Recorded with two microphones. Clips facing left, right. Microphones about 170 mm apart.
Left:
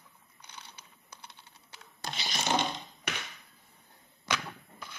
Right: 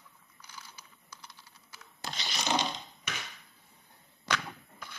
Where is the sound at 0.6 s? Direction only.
60° left (ahead or behind).